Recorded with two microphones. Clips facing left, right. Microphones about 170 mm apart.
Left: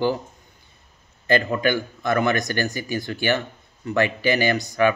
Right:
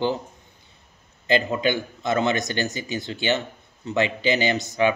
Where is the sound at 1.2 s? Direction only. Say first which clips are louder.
Left 1 dB; 20° right (ahead or behind).